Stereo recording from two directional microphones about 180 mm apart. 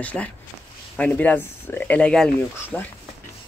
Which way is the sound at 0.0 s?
10° left (ahead or behind).